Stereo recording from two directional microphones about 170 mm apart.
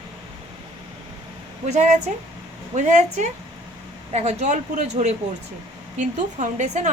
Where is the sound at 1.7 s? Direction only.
40° right (ahead or behind).